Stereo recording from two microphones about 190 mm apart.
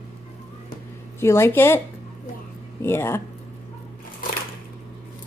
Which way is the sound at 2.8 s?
10° left (ahead or behind).